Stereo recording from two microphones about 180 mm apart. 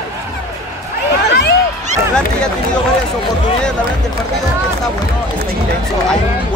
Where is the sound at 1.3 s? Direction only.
70° left (ahead or behind).